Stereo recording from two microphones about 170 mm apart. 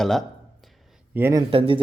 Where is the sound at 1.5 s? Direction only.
35° right (ahead or behind).